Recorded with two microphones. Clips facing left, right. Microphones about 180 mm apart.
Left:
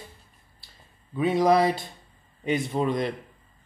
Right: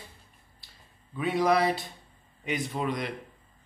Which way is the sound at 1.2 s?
25° left (ahead or behind).